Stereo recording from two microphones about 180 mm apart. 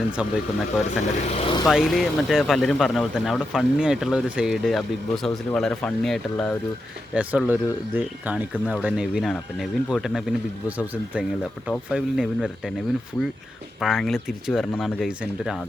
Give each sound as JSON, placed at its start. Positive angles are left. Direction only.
{"t": 0.2, "sound": "speech", "side_deg": -5}
{"t": 1.2, "sound": "speech", "side_deg": 35}
{"t": 1.6, "sound": "speech", "side_deg": 0}
{"t": 13.7, "sound": "speech", "side_deg": 0}